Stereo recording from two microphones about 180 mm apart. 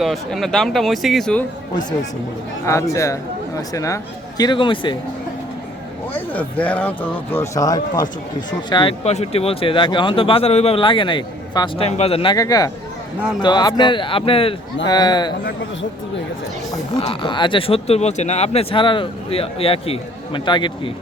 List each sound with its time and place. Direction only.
0.0 s speech: centre (ahead or behind)
2.6 s speech: 15° left (ahead or behind)
6.1 s speech: 10° left (ahead or behind)
7.3 s speech: 20° left (ahead or behind)
16.7 s speech: 25° left (ahead or behind)